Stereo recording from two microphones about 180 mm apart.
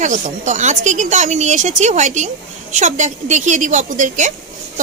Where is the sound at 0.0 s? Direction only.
45° right (ahead or behind).